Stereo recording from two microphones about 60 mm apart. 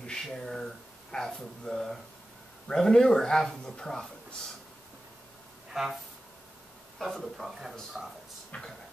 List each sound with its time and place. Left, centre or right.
0.0 s speech: centre
5.7 s speech: centre
7.0 s speech: centre
8.5 s speech: centre